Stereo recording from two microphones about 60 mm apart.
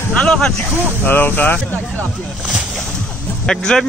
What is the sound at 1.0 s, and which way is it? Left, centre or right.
Speech, left.